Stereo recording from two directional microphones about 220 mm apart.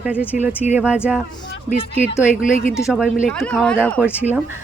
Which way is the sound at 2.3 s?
35° left (ahead or behind).